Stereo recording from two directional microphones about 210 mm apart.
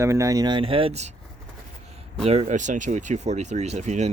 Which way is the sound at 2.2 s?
30° right (ahead or behind).